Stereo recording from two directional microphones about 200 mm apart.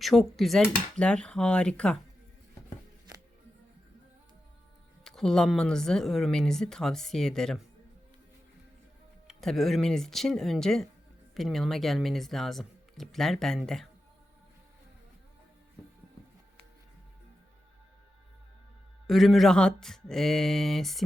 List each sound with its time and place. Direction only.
0.0 s speech: centre (ahead or behind)
5.0 s speech: centre (ahead or behind)
9.2 s speech: centre (ahead or behind)
19.0 s speech: centre (ahead or behind)